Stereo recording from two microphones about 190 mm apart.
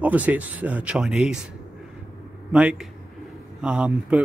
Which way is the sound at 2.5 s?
5° right (ahead or behind).